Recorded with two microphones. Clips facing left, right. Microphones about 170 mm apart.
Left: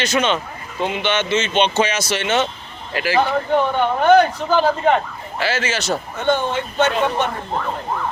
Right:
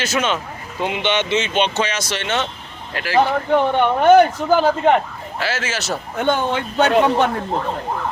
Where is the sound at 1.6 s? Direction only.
Centre (ahead or behind).